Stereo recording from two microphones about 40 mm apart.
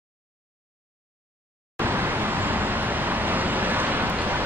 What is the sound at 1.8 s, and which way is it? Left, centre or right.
Vehicle, right.